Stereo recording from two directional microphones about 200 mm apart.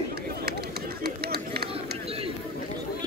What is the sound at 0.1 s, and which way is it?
Run, 55° right (ahead or behind).